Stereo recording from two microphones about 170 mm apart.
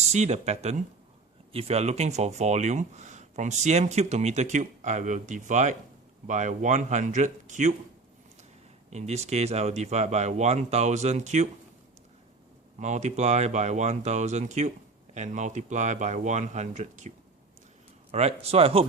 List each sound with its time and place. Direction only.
0.0 s speech: 40° right (ahead or behind)
8.9 s speech: 40° right (ahead or behind)
12.8 s speech: 45° right (ahead or behind)
18.1 s speech: 35° right (ahead or behind)